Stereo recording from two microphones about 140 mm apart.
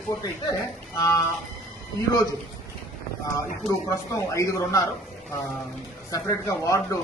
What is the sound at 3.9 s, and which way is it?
Speech, 25° left (ahead or behind).